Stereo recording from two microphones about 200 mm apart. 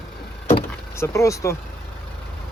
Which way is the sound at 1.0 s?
15° left (ahead or behind).